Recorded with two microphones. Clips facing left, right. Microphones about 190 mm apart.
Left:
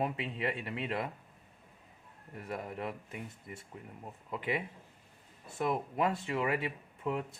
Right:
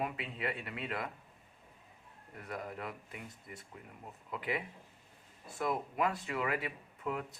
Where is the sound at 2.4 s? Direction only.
25° left (ahead or behind).